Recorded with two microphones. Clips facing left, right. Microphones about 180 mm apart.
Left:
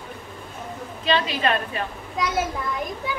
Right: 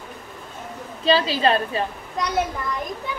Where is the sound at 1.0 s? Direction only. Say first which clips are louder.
Right 4 dB; 30° right (ahead or behind).